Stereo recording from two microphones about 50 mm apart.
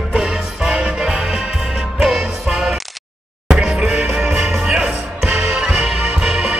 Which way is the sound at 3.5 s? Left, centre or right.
Centre.